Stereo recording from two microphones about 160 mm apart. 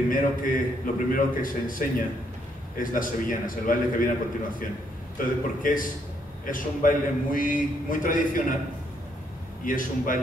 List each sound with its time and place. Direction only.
0.1 s a man's voice: 60° left (ahead or behind)
5.2 s a man's voice: 60° left (ahead or behind)
9.7 s a man's voice: 60° left (ahead or behind)